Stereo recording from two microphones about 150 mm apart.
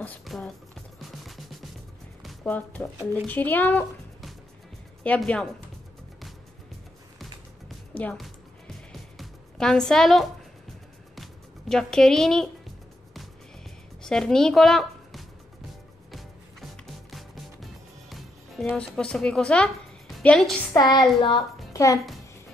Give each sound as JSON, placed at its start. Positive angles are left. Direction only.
{"t": 0.2, "sound": "speech", "side_deg": 0}
{"t": 1.2, "sound": "music", "side_deg": 0}
{"t": 2.4, "sound": "a child's voice", "side_deg": 10}
{"t": 5.0, "sound": "a child's voice", "side_deg": 10}
{"t": 7.9, "sound": "music", "side_deg": 10}
{"t": 9.2, "sound": "a woman's voice", "side_deg": 5}
{"t": 11.7, "sound": "a woman's voice", "side_deg": 5}
{"t": 14.0, "sound": "a woman's voice", "side_deg": 5}
{"t": 16.1, "sound": "music", "side_deg": 0}
{"t": 18.1, "sound": "a woman's voice", "side_deg": 5}
{"t": 20.7, "sound": "child singing", "side_deg": 25}
{"t": 21.7, "sound": "a child's voice", "side_deg": 20}